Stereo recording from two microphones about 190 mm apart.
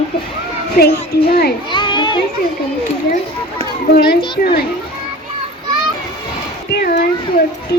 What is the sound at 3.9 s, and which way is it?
Speech, 55° left (ahead or behind).